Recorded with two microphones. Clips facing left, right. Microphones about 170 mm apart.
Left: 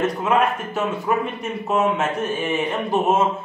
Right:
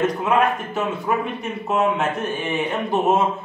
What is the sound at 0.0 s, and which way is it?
Speech, centre (ahead or behind).